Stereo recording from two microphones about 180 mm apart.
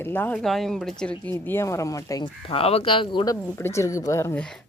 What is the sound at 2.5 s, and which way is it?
Speech, 30° left (ahead or behind).